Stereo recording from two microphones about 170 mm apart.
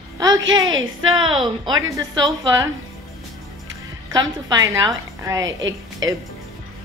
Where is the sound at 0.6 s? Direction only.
25° right (ahead or behind).